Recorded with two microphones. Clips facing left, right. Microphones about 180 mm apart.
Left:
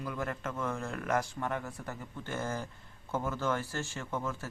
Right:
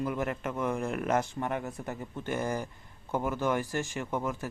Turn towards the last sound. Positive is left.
turn(degrees=-15)  # may be behind; listen again after turning